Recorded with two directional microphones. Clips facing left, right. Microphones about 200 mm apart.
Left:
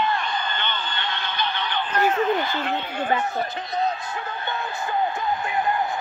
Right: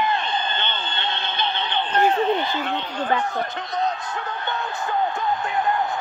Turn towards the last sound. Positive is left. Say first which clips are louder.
# right 1 dB
turn(degrees=0)  # may be behind; listen again after turning